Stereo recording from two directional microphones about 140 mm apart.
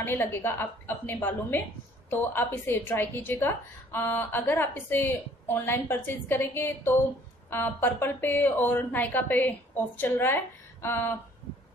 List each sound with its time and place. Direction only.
0.0 s a woman's voice: 15° left (ahead or behind)